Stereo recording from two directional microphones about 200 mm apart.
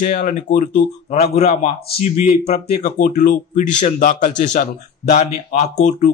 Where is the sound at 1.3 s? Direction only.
35° left (ahead or behind).